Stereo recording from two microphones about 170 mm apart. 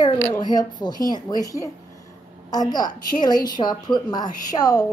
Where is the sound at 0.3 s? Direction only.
25° left (ahead or behind).